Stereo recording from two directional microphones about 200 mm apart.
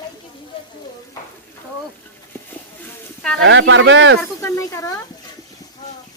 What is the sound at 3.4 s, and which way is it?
Speech, 70° right (ahead or behind).